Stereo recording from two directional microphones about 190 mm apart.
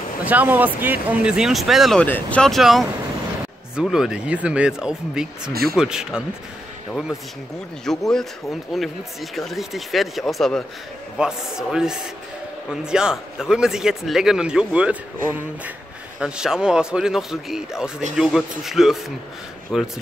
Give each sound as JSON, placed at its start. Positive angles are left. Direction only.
{"t": 0.2, "sound": "speech", "side_deg": -10}
{"t": 5.5, "sound": "speech", "side_deg": -55}
{"t": 5.8, "sound": "speech", "side_deg": -5}